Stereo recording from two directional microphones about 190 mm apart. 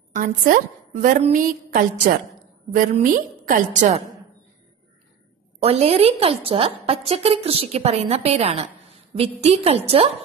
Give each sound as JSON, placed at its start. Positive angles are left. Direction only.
{"t": 0.2, "sound": "a woman's voice", "side_deg": -45}
{"t": 5.6, "sound": "a woman's voice", "side_deg": -30}